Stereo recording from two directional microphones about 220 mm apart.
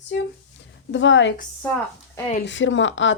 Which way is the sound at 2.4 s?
60° left (ahead or behind).